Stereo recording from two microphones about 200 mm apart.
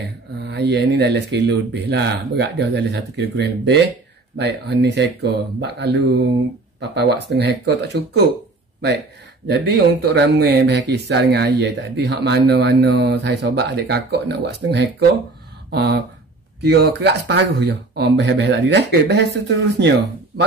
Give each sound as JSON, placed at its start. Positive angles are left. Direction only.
{"t": 0.0, "sound": "speech", "side_deg": -60}
{"t": 9.5, "sound": "speech", "side_deg": -55}